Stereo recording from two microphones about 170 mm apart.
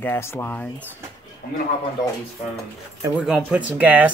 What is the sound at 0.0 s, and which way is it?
Speech, 15° left (ahead or behind).